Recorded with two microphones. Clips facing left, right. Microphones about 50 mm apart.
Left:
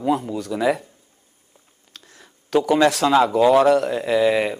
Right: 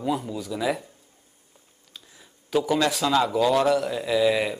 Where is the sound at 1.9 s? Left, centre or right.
Left.